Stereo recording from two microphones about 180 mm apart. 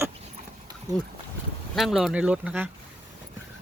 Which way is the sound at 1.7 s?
Centre (ahead or behind).